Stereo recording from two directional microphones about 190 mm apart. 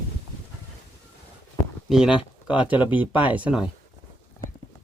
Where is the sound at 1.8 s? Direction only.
Centre (ahead or behind).